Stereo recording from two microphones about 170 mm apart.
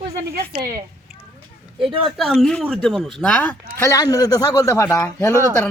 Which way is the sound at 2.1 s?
Centre (ahead or behind).